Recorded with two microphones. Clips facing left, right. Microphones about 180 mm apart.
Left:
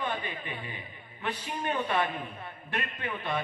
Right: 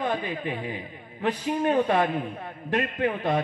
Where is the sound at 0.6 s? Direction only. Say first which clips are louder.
Right 9 dB; 90° right.